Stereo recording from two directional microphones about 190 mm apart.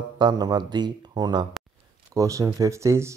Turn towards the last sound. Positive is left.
turn(degrees=-15)  # may be behind; listen again after turning